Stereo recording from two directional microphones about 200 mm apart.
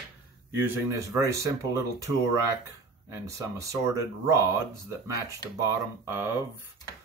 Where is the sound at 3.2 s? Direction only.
15° right (ahead or behind).